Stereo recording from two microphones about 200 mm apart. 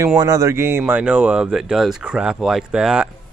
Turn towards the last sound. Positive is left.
turn(degrees=-5)  # may be behind; listen again after turning